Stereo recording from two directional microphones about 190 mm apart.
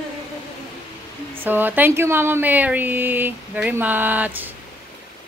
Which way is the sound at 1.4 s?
10° right (ahead or behind).